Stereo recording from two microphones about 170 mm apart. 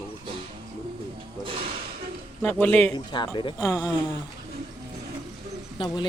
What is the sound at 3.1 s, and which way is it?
Speech, 25° left (ahead or behind).